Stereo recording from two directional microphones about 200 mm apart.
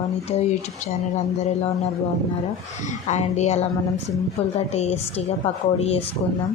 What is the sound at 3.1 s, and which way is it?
Speech, 35° left (ahead or behind).